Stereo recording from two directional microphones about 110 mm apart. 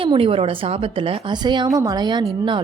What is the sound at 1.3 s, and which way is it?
A woman's voice, 45° right (ahead or behind).